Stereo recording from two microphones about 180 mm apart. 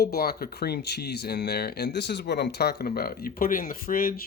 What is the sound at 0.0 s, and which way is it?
Speech, 60° left (ahead or behind).